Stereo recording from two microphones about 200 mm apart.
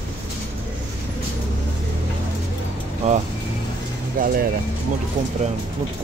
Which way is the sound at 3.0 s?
35° right (ahead or behind).